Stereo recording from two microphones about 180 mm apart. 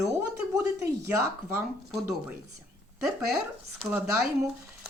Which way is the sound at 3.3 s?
5° right (ahead or behind).